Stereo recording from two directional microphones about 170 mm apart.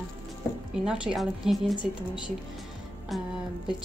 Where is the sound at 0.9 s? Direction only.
5° right (ahead or behind).